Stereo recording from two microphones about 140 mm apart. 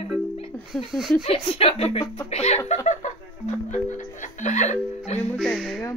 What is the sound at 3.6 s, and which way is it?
Music, 60° left (ahead or behind).